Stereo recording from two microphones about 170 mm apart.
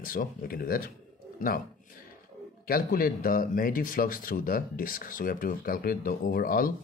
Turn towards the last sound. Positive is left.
turn(degrees=55)  # may be behind; listen again after turning